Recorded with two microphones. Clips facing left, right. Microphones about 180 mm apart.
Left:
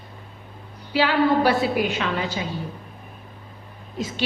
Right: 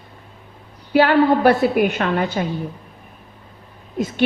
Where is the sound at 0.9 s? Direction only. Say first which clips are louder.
Right 5 dB; 55° right (ahead or behind).